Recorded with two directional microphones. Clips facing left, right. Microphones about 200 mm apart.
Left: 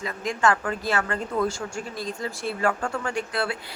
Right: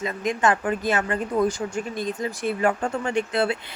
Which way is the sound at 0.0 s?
20° right (ahead or behind).